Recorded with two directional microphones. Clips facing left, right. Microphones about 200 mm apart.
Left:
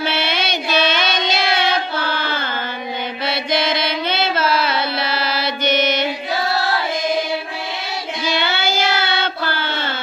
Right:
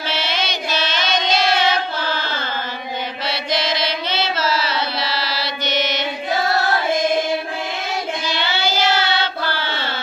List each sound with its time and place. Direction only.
0.1 s child singing: 55° left (ahead or behind)
3.3 s carnatic music: 55° left (ahead or behind)
8.5 s child singing: 50° left (ahead or behind)